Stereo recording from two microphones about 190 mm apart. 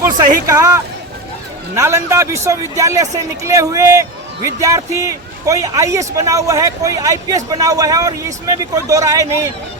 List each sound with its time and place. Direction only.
0.0 s a man's voice: 15° right (ahead or behind)